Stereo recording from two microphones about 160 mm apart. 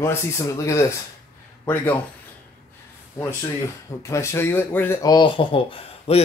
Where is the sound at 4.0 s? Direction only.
20° left (ahead or behind).